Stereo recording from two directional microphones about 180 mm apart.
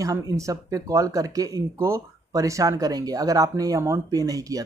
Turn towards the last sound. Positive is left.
turn(degrees=-20)  # may be behind; listen again after turning